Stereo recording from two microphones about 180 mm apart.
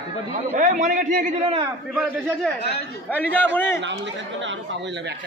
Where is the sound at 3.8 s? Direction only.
85° right.